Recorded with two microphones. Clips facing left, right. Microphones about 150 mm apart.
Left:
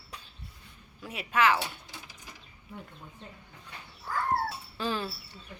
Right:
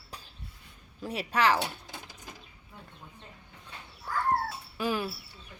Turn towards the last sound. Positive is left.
turn(degrees=-10)  # may be behind; listen again after turning